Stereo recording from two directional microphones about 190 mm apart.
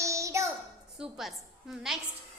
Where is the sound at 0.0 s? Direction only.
15° right (ahead or behind).